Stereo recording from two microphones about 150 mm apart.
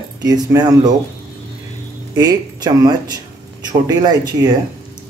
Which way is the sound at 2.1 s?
25° right (ahead or behind).